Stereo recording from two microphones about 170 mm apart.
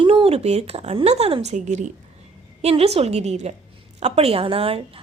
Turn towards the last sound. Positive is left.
turn(degrees=-35)  # may be behind; listen again after turning